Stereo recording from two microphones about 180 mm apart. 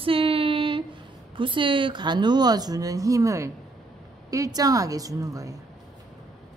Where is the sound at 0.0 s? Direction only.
30° right (ahead or behind).